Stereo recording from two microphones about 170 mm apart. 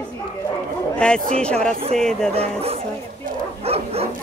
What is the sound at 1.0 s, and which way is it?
Speech, 5° left (ahead or behind).